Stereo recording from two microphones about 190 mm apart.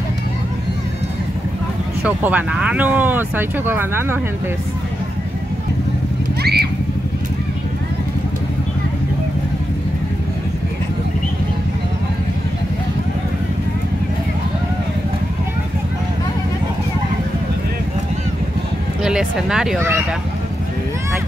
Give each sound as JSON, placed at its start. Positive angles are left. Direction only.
{"t": 2.0, "sound": "speech", "side_deg": -10}
{"t": 6.4, "sound": "a sound", "side_deg": -55}
{"t": 19.0, "sound": "speech", "side_deg": -5}